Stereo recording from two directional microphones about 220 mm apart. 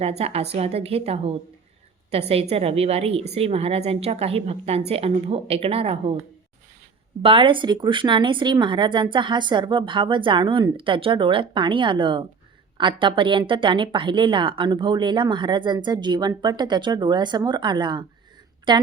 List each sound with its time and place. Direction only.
0.0 s a woman's voice: 30° right (ahead or behind)
7.2 s a woman's voice: 25° right (ahead or behind)